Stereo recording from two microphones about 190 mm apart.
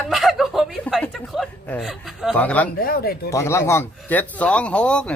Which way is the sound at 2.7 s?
50° left (ahead or behind).